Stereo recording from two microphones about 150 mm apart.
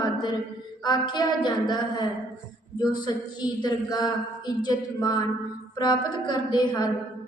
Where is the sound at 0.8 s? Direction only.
30° left (ahead or behind).